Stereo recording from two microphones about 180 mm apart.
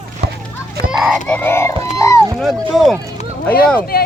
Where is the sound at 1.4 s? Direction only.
15° left (ahead or behind).